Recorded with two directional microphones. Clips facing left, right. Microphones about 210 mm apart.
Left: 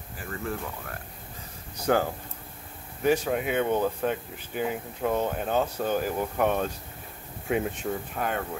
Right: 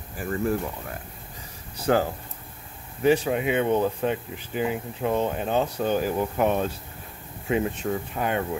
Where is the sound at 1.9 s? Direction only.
Centre (ahead or behind).